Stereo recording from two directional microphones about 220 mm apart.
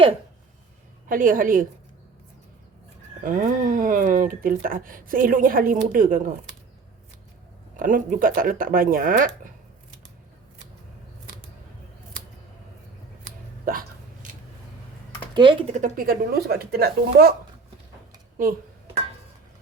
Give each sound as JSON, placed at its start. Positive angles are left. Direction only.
{"t": 1.0, "sound": "speech", "side_deg": -40}
{"t": 3.2, "sound": "speech", "side_deg": -35}
{"t": 7.8, "sound": "speech", "side_deg": -40}
{"t": 13.7, "sound": "hiccup", "side_deg": -40}
{"t": 15.3, "sound": "speech", "side_deg": -20}
{"t": 15.8, "sound": "speech", "side_deg": -40}